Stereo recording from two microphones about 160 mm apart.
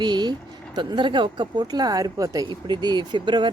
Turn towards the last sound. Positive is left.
turn(degrees=-30)  # may be behind; listen again after turning